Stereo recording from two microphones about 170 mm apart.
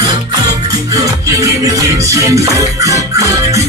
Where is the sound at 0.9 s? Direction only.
20° right (ahead or behind).